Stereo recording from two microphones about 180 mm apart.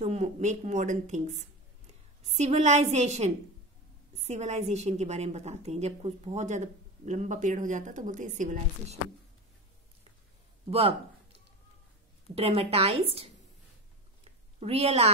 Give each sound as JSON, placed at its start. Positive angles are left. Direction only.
{"t": 0.0, "sound": "a woman's voice", "side_deg": -40}
{"t": 12.4, "sound": "a woman's voice", "side_deg": -35}
{"t": 14.2, "sound": "a sound", "side_deg": -35}